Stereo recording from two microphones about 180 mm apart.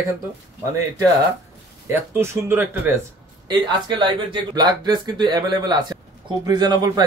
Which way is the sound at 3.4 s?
25° right (ahead or behind).